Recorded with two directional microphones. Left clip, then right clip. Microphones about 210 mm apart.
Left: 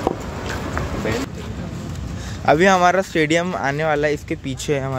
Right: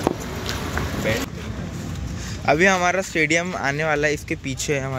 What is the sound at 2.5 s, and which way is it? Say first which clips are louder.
Speech: left 4 dB; 20° left (ahead or behind).